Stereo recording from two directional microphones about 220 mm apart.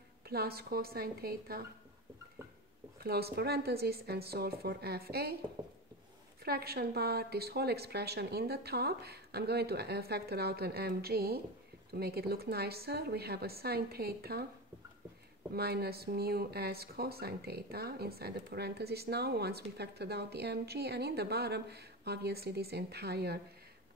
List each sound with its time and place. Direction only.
0.3 s speech: 45° right (ahead or behind)
3.0 s speech: 45° right (ahead or behind)
6.4 s speech: 45° right (ahead or behind)
15.5 s speech: 45° right (ahead or behind)